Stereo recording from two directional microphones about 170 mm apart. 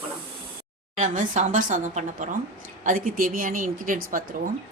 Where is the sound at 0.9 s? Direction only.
50° right (ahead or behind).